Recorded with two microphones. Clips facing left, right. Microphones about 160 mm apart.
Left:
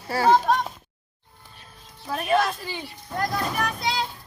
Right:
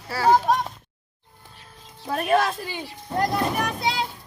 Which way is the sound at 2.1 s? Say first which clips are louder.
Right 1 dB; 50° right (ahead or behind).